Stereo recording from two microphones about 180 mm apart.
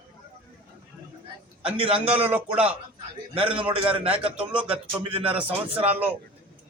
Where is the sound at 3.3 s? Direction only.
30° right (ahead or behind).